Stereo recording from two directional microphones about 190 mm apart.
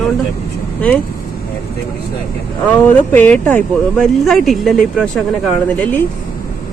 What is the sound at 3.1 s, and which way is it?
Speech, 10° left (ahead or behind).